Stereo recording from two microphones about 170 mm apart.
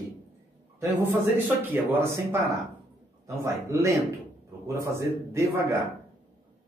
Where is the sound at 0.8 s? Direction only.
15° right (ahead or behind).